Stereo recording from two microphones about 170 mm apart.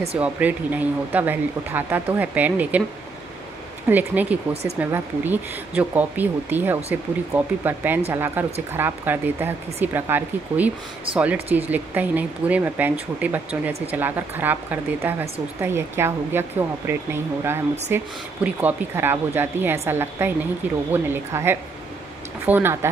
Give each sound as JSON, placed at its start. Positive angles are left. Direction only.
{"t": 0.2, "sound": "speech", "side_deg": -10}
{"t": 3.9, "sound": "speech", "side_deg": -10}